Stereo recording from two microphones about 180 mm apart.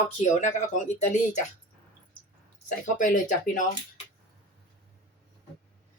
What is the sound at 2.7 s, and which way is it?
Speech, 45° left (ahead or behind).